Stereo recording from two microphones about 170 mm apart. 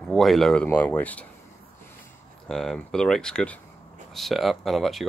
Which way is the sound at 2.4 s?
Centre (ahead or behind).